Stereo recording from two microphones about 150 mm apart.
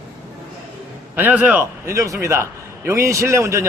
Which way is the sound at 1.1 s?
10° right (ahead or behind).